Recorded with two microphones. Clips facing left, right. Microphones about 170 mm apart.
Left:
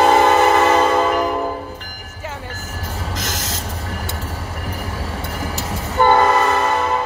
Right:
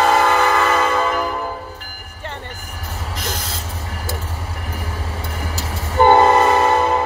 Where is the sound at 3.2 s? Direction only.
90° left.